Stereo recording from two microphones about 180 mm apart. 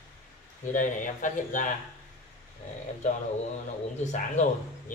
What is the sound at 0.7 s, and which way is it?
Speech, 45° left (ahead or behind).